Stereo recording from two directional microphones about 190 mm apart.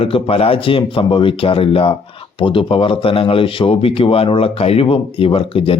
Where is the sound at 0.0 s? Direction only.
30° left (ahead or behind).